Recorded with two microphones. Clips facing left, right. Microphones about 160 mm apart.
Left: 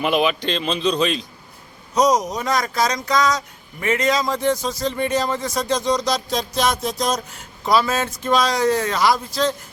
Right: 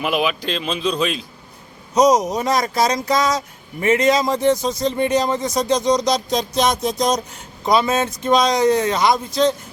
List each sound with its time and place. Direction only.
0.0 s speech: centre (ahead or behind)
2.2 s speech: 25° right (ahead or behind)